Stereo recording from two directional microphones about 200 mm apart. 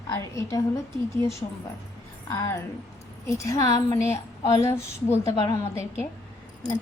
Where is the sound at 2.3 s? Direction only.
15° left (ahead or behind).